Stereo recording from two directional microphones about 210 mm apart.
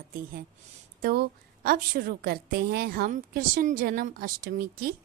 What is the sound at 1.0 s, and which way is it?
A woman's voice, 45° right (ahead or behind).